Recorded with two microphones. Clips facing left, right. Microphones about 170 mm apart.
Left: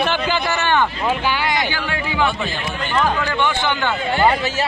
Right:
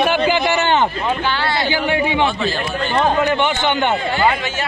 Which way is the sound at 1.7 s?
25° right (ahead or behind).